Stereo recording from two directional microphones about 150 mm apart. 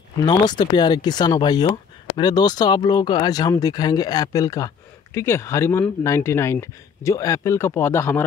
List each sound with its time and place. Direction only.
0.2 s speech: 30° left (ahead or behind)